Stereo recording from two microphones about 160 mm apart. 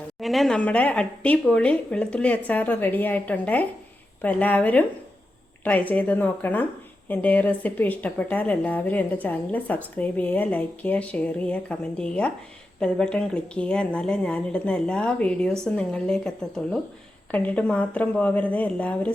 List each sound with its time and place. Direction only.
0.2 s a woman's voice: centre (ahead or behind)
17.3 s speech: 10° left (ahead or behind)